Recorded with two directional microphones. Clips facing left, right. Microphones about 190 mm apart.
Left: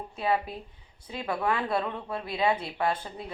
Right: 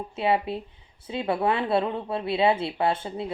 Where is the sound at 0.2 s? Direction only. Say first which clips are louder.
Right 4 dB; 25° right (ahead or behind).